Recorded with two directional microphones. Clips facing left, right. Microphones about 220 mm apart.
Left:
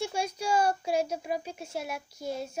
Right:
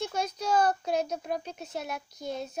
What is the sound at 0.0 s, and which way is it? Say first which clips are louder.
A child's voice: even; 10° left (ahead or behind).